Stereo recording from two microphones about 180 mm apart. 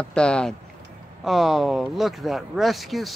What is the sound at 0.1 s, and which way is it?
Speech, 5° left (ahead or behind).